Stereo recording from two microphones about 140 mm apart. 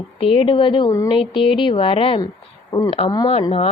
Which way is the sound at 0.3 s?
35° left (ahead or behind).